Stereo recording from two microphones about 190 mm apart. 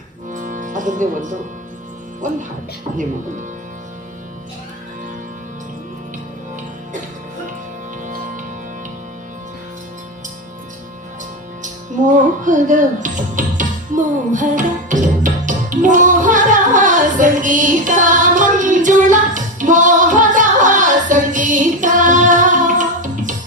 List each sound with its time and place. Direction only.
0.3 s music: 45° right (ahead or behind)
2.2 s speech: 40° right (ahead or behind)
11.6 s music: 40° right (ahead or behind)